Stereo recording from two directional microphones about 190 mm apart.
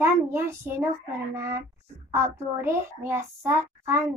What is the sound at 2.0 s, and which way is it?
Speech, 15° right (ahead or behind).